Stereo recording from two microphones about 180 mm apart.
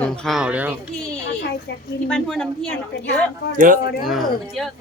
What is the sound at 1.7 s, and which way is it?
Speech, 70° left (ahead or behind).